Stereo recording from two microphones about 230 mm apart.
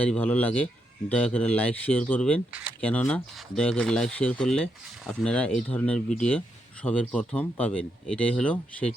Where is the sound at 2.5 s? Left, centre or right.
Centre.